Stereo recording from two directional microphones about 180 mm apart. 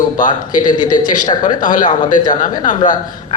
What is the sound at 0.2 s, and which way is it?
Speech, 45° left (ahead or behind).